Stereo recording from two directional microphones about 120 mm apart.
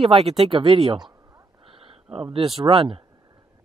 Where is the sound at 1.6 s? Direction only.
50° right (ahead or behind).